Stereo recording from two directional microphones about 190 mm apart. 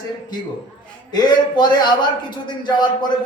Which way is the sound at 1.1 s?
20° left (ahead or behind).